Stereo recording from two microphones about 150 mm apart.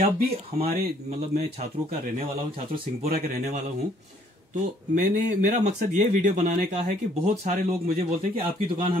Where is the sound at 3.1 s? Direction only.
90° right.